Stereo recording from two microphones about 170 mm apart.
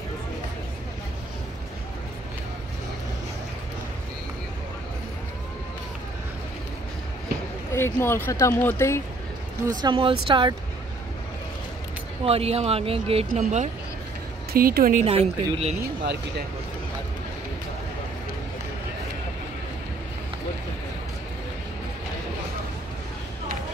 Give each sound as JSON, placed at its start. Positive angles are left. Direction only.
{"t": 7.7, "sound": "speech", "side_deg": 15}
{"t": 9.7, "sound": "speech", "side_deg": -25}
{"t": 12.3, "sound": "speech", "side_deg": -35}
{"t": 14.5, "sound": "speech", "side_deg": -60}